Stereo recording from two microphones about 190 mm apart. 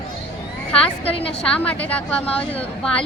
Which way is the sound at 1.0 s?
30° left (ahead or behind).